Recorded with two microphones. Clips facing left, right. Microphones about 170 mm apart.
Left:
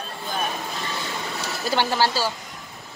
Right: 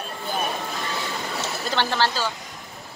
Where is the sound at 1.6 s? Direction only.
10° left (ahead or behind).